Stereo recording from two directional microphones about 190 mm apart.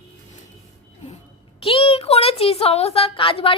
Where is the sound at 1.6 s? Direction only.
30° left (ahead or behind).